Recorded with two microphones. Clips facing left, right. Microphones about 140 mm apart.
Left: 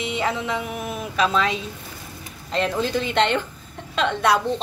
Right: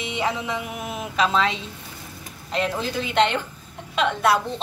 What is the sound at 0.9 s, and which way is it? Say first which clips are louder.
Speech: even; 25° right (ahead or behind).